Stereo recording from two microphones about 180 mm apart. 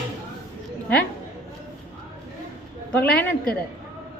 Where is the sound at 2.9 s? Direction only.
5° left (ahead or behind).